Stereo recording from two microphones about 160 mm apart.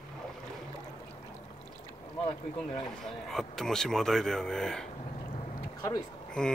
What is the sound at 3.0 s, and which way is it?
A man's voice, centre (ahead or behind).